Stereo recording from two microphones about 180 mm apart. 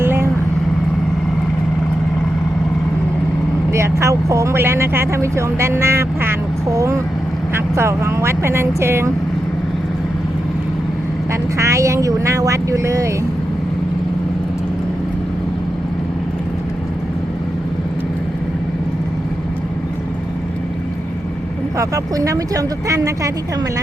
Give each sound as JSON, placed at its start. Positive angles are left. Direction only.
{"t": 0.0, "sound": "vehicle", "side_deg": -15}
{"t": 3.7, "sound": "speech", "side_deg": -15}
{"t": 11.5, "sound": "speech", "side_deg": -15}
{"t": 21.8, "sound": "speech", "side_deg": -20}